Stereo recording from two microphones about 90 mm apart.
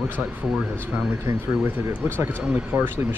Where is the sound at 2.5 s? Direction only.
20° right (ahead or behind).